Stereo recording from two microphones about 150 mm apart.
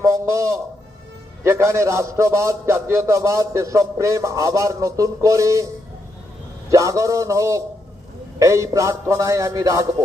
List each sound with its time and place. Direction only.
0.0 s a sound: 20° right (ahead or behind)
1.5 s a man's voice: 20° right (ahead or behind)
6.7 s a man's voice: 20° right (ahead or behind)